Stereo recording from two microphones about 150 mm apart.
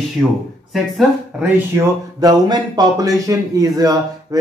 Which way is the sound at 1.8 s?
25° right (ahead or behind).